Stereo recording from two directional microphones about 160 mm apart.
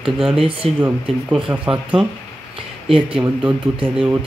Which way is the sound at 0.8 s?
10° right (ahead or behind).